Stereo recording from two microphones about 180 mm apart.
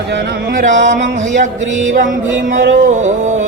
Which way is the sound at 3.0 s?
40° right (ahead or behind).